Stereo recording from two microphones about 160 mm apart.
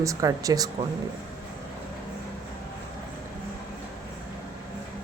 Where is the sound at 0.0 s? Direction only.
20° right (ahead or behind).